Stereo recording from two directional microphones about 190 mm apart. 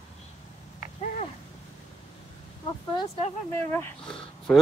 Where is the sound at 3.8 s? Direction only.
5° left (ahead or behind).